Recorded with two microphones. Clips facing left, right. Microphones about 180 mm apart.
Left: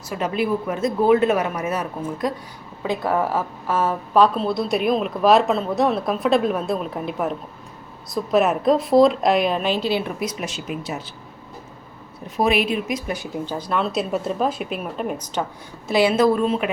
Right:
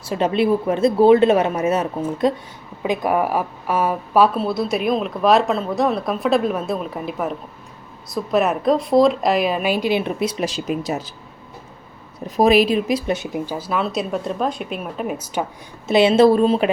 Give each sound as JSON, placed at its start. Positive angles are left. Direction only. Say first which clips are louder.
{"t": 0.0, "sound": "speech", "louder": "right 5 dB", "side_deg": -30}
{"t": 2.8, "sound": "a woman's voice", "louder": "right 2 dB", "side_deg": -15}
{"t": 12.4, "sound": "speech", "louder": "right 5 dB", "side_deg": -35}
{"t": 13.3, "sound": "a woman's voice", "louder": "right 1 dB", "side_deg": -10}
{"t": 15.9, "sound": "speech", "louder": "right 4 dB", "side_deg": -25}